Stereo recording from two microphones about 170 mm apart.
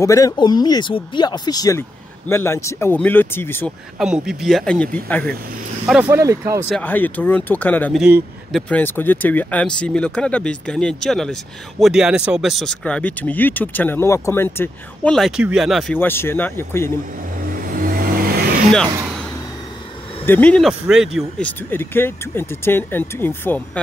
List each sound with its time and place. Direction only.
0.0 s speech: 20° left (ahead or behind)
4.0 s speech: 5° right (ahead or behind)
5.9 s speech: 5° right (ahead or behind)
6.1 s speech: 15° right (ahead or behind)
6.7 s speech: 10° left (ahead or behind)
8.0 s speech: centre (ahead or behind); by 15.1 s 15° left (ahead or behind)
15.1 s speech: centre (ahead or behind)
15.9 s speech: 10° left (ahead or behind)
17.5 s vehicle: 55° right (ahead or behind)
20.2 s speech: 10° left (ahead or behind)
21.4 s speech: 10° left (ahead or behind)